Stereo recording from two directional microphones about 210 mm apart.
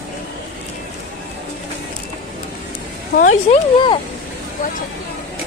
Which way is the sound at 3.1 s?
30° left (ahead or behind).